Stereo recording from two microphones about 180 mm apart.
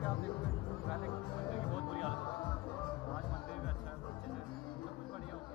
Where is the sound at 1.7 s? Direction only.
Centre (ahead or behind).